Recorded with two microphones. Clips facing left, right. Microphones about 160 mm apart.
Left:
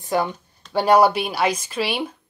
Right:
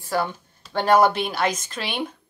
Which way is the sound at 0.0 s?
20° left (ahead or behind).